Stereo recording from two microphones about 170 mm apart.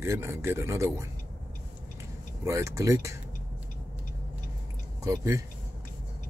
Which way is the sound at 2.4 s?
20° right (ahead or behind).